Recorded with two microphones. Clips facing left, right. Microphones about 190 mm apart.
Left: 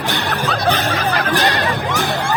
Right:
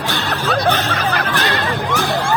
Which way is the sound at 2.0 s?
20° left (ahead or behind).